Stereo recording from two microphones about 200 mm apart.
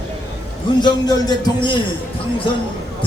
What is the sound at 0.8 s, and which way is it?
Speech, 20° left (ahead or behind).